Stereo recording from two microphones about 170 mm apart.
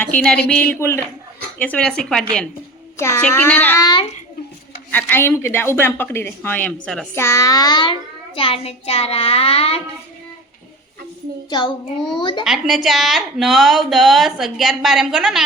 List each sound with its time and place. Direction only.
0.0 s a woman's voice: 5° left (ahead or behind)
4.9 s speech: 10° left (ahead or behind)
7.3 s child singing: 20° left (ahead or behind)
8.4 s a child's voice: 30° left (ahead or behind)
11.4 s child singing: 25° left (ahead or behind)
12.5 s a woman's voice: centre (ahead or behind)